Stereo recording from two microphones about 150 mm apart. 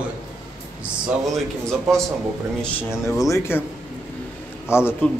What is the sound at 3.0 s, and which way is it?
Speech, 20° left (ahead or behind).